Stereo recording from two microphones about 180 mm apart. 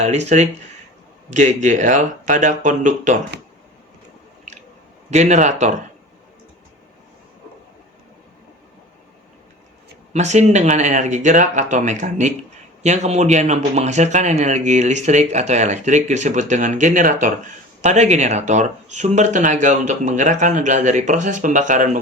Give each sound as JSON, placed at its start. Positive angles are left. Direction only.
{"t": 0.0, "sound": "speech", "side_deg": -40}
{"t": 5.1, "sound": "speech", "side_deg": -40}
{"t": 10.1, "sound": "speech", "side_deg": -40}